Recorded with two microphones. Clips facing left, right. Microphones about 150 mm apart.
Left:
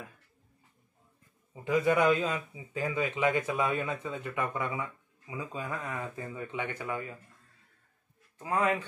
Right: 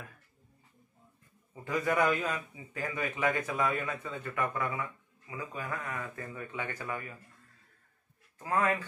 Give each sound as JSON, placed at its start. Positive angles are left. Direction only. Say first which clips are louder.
{"t": 1.5, "sound": "a man's voice", "louder": "left 5 dB", "side_deg": 20}
{"t": 8.4, "sound": "speech", "louder": "left 1 dB", "side_deg": 15}